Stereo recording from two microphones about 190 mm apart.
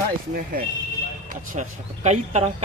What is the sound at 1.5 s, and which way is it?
Speech, 35° right (ahead or behind).